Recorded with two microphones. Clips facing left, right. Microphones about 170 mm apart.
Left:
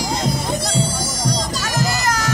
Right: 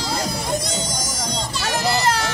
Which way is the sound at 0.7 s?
35° left (ahead or behind).